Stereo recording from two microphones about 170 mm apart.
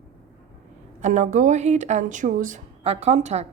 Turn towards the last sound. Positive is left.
turn(degrees=-40)  # may be behind; listen again after turning